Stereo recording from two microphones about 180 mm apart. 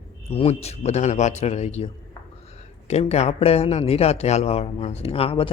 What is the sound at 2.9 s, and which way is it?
A man's voice, 35° left (ahead or behind).